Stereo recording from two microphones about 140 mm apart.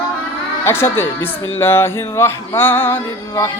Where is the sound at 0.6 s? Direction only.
15° left (ahead or behind).